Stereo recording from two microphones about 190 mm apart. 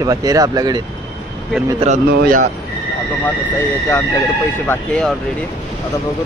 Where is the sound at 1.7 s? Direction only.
40° right (ahead or behind).